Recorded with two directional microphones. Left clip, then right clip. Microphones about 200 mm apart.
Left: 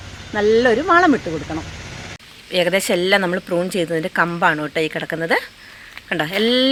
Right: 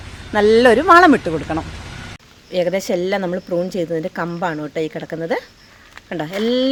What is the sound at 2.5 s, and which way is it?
Speech, centre (ahead or behind).